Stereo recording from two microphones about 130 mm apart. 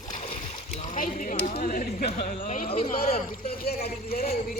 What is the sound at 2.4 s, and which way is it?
Speech, 90° left.